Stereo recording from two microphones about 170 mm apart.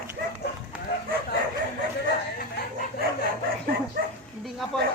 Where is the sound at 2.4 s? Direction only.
55° left (ahead or behind).